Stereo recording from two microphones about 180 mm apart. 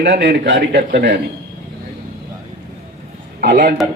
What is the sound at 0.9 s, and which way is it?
Speech, 55° right (ahead or behind).